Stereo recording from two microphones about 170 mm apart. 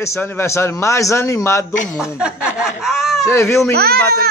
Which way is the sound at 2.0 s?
5° right (ahead or behind).